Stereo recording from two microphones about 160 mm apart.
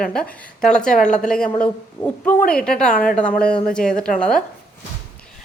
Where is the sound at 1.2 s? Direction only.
5° left (ahead or behind).